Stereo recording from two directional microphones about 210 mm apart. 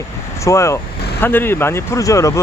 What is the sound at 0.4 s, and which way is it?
Speech, 15° left (ahead or behind).